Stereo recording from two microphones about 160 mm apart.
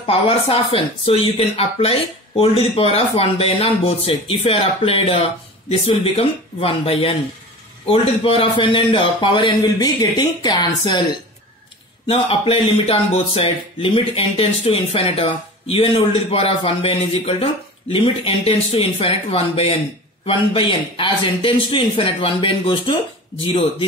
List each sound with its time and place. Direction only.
0.0 s speech: 35° left (ahead or behind)
12.1 s speech: 35° left (ahead or behind)